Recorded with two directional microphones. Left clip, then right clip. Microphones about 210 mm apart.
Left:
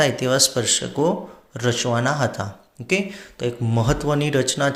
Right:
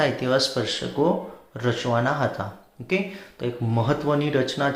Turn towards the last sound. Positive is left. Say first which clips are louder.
# left 2 dB
turn(degrees=40)  # may be behind; listen again after turning